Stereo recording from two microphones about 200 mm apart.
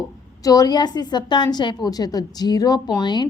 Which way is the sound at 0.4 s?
20° left (ahead or behind).